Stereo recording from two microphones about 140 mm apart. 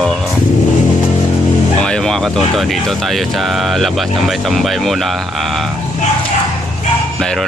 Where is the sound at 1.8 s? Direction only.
5° left (ahead or behind).